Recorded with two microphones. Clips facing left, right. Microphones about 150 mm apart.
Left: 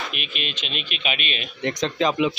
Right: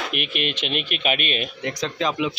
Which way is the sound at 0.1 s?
60° right (ahead or behind).